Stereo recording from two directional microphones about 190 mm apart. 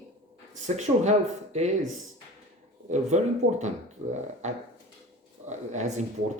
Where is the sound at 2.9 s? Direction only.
40° right (ahead or behind).